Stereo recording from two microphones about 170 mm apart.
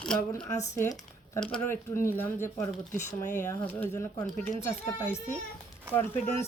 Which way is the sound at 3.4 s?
15° left (ahead or behind).